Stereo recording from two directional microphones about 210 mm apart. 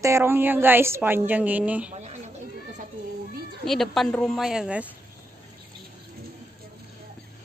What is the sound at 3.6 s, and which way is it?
A woman's voice, centre (ahead or behind).